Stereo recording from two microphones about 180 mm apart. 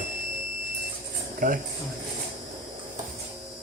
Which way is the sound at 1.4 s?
50° right (ahead or behind).